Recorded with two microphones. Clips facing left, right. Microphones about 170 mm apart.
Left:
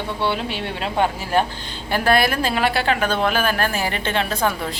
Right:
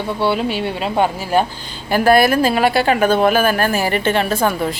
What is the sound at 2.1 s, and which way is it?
Speech, 45° right (ahead or behind).